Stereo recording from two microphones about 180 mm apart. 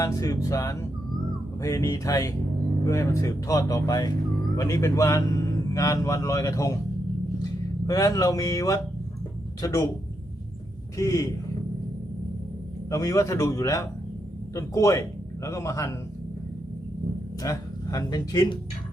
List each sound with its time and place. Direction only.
0.0 s speech: 20° left (ahead or behind)
7.9 s speech: 20° left (ahead or behind)
10.9 s speech: 20° left (ahead or behind)
12.9 s speech: 20° left (ahead or behind)
17.4 s speech: 20° left (ahead or behind)